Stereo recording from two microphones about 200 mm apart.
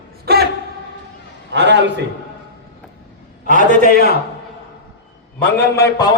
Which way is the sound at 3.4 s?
40° right (ahead or behind).